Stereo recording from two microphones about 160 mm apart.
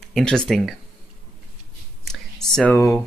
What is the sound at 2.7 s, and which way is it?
Speech, 15° left (ahead or behind).